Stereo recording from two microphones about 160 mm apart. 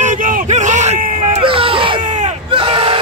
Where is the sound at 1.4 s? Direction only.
35° right (ahead or behind).